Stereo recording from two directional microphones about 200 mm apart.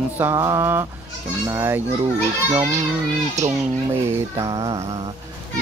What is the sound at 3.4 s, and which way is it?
Speech, 35° right (ahead or behind).